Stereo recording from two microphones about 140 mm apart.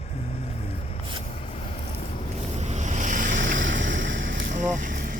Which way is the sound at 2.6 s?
55° right (ahead or behind).